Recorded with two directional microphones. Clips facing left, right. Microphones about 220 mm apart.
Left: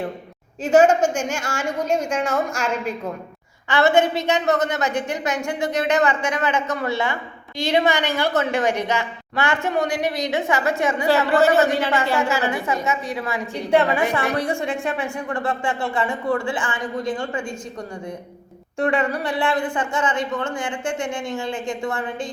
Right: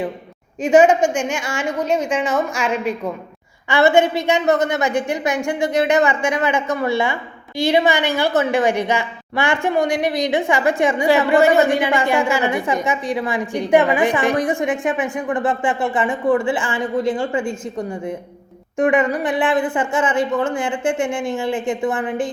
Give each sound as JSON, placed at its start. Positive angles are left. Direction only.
{"t": 1.0, "sound": "a woman's voice", "side_deg": 10}
{"t": 3.7, "sound": "a woman's voice", "side_deg": -10}
{"t": 19.8, "sound": "a woman's voice", "side_deg": -5}
{"t": 21.7, "sound": "speech", "side_deg": -20}